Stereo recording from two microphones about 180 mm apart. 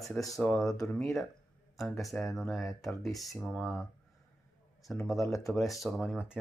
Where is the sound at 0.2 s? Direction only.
20° left (ahead or behind).